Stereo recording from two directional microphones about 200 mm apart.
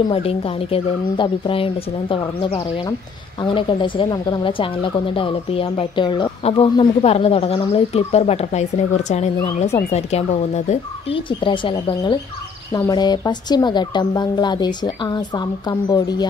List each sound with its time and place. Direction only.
0.1 s a woman's voice: 30° left (ahead or behind)